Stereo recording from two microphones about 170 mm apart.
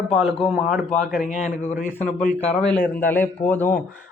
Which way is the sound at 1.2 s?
45° left (ahead or behind).